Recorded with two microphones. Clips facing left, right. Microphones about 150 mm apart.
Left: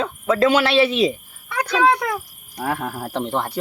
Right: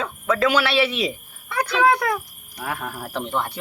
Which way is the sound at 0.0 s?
25° left (ahead or behind).